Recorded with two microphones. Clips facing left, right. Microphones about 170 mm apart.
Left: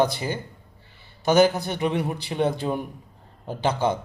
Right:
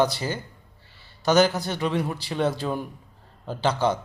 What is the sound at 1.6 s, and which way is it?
A man's voice, 15° left (ahead or behind).